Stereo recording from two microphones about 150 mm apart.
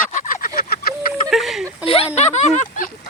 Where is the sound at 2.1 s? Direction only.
50° left (ahead or behind).